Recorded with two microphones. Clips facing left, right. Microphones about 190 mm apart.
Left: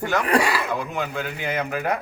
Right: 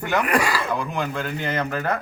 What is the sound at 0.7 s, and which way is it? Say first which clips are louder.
Speech: right 1 dB; 5° left (ahead or behind).